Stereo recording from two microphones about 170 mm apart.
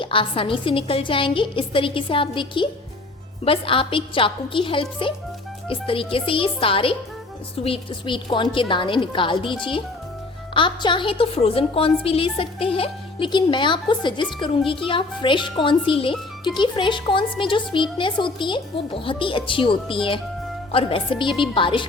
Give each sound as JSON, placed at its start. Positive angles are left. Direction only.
{"t": 0.0, "sound": "a woman's voice", "side_deg": 30}